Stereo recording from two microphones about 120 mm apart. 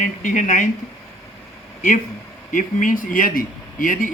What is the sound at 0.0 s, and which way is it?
Speech, 90° left.